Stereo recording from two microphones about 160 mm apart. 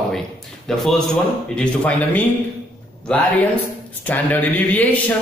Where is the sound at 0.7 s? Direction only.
Centre (ahead or behind).